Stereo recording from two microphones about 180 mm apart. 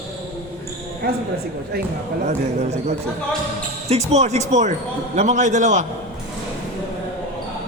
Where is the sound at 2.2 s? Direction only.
40° right (ahead or behind).